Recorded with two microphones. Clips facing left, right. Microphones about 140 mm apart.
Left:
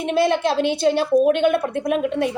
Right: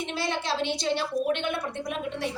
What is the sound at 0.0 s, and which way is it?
A woman's voice, 55° left (ahead or behind).